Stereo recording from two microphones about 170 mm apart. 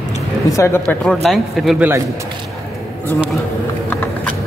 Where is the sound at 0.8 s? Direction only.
5° left (ahead or behind).